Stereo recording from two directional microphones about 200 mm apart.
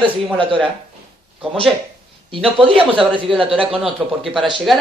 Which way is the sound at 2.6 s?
25° right (ahead or behind).